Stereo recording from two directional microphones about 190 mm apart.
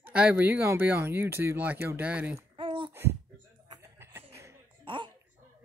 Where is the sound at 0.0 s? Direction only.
5° right (ahead or behind).